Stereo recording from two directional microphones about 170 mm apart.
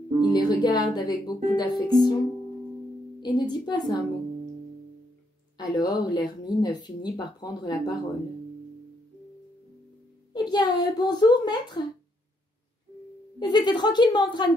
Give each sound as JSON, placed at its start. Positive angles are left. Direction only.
{"t": 0.2, "sound": "speech", "side_deg": 25}
{"t": 3.2, "sound": "speech", "side_deg": 25}
{"t": 5.6, "sound": "speech", "side_deg": 25}
{"t": 10.3, "sound": "a sound", "side_deg": 25}
{"t": 10.8, "sound": "speech", "side_deg": 25}
{"t": 13.4, "sound": "speech", "side_deg": 25}